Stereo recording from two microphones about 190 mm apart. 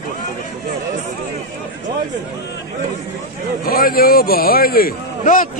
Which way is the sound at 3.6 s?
50° left (ahead or behind).